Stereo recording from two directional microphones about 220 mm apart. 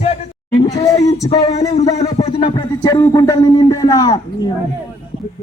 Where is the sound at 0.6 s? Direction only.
15° left (ahead or behind).